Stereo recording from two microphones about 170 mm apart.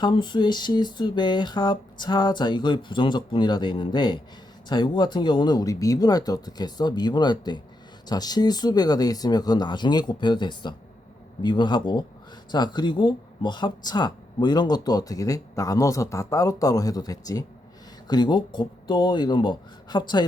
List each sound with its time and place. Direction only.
0.0 s speech: 25° left (ahead or behind)